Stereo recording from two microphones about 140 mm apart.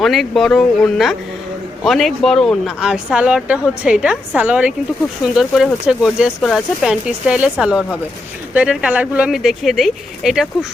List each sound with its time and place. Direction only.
0.0 s a woman's voice: centre (ahead or behind)